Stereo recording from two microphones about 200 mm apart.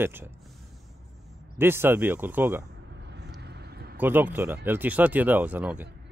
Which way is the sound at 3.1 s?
55° right (ahead or behind).